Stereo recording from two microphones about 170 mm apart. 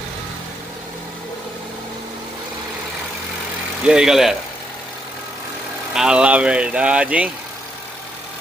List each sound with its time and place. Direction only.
3.8 s speech: 5° right (ahead or behind)
5.9 s speech: 5° right (ahead or behind)